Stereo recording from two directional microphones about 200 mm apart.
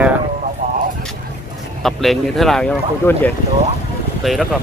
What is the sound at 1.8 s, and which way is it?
Speech, centre (ahead or behind).